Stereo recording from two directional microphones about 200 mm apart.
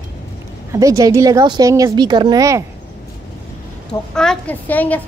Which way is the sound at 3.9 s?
5° left (ahead or behind).